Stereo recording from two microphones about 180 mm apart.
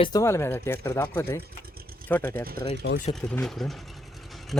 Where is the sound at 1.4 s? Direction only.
60° right (ahead or behind).